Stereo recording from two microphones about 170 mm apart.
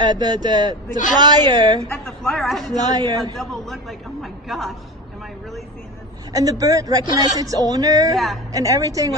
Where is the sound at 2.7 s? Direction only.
20° right (ahead or behind).